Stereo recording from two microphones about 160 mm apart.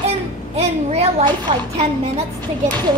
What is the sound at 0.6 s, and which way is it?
Speech, 40° right (ahead or behind).